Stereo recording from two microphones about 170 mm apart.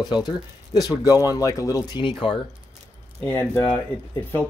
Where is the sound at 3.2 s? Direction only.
10° left (ahead or behind).